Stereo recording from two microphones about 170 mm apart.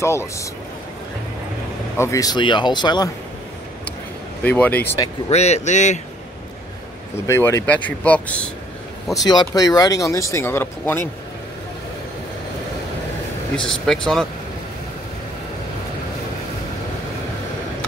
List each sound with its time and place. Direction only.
2.0 s speech: 20° left (ahead or behind)
4.4 s speech: 10° left (ahead or behind)
5.3 s a man's voice: 40° left (ahead or behind)
7.2 s speech: 15° left (ahead or behind)
9.1 s speech: 20° left (ahead or behind)
13.6 s speech: 5° left (ahead or behind)